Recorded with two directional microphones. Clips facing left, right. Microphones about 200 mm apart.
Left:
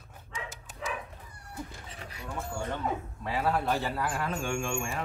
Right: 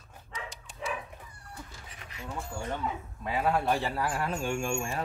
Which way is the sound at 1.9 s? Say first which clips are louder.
Left 3 dB; 35° left (ahead or behind).